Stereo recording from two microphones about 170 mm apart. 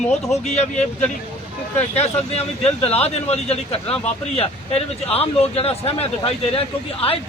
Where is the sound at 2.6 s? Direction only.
35° left (ahead or behind).